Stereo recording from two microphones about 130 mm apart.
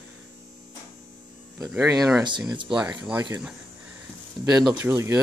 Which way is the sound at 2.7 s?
10° right (ahead or behind).